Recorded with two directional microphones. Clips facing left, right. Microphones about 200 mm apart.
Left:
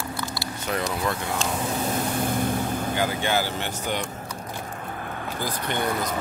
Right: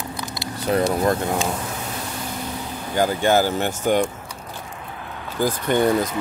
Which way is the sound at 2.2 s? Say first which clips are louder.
Left 5 dB; 50° left (ahead or behind).